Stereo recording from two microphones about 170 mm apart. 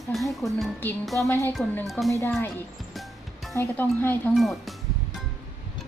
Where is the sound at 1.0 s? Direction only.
Centre (ahead or behind).